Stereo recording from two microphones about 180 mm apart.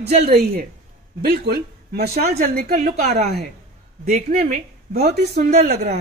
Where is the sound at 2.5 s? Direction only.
50° right (ahead or behind).